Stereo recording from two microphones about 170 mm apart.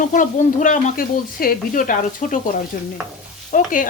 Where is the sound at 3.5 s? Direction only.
50° left (ahead or behind).